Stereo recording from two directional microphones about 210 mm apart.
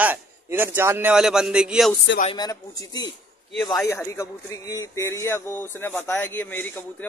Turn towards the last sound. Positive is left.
turn(degrees=10)  # may be behind; listen again after turning